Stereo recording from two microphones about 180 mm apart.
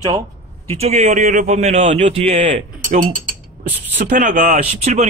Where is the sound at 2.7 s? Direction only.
50° right (ahead or behind).